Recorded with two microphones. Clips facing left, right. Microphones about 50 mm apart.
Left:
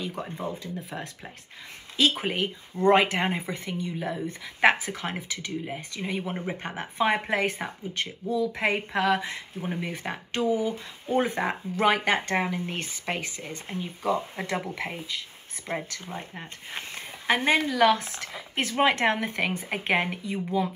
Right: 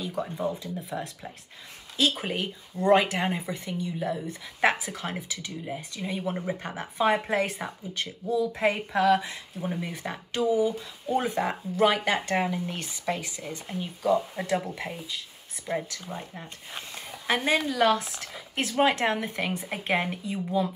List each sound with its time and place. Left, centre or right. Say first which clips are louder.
0.0 s speech: right 3 dB; left